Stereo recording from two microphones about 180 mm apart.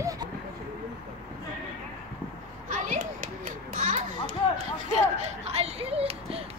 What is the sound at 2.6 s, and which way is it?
Children playing, 45° right (ahead or behind).